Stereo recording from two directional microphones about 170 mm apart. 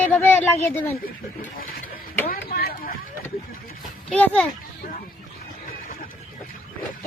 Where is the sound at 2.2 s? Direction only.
60° left (ahead or behind).